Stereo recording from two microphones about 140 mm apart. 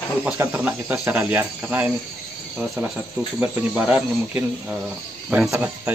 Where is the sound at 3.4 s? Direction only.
10° right (ahead or behind).